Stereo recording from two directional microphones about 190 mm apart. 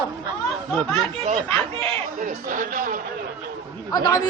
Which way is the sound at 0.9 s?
30° right (ahead or behind).